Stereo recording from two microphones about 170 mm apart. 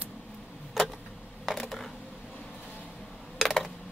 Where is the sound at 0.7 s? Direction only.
Centre (ahead or behind).